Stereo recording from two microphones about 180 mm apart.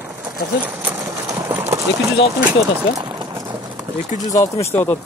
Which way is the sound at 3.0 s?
25° right (ahead or behind).